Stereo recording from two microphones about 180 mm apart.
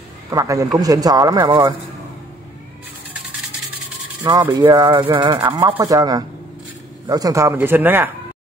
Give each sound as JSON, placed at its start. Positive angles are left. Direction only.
{"t": 0.3, "sound": "speech", "side_deg": -20}
{"t": 4.2, "sound": "speech", "side_deg": -20}